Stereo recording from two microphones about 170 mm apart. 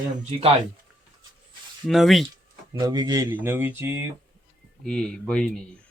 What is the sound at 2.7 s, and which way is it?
Speech, 25° right (ahead or behind).